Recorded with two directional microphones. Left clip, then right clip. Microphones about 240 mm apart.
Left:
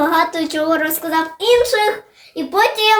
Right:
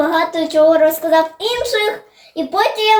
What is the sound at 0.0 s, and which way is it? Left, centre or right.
A child's voice, left.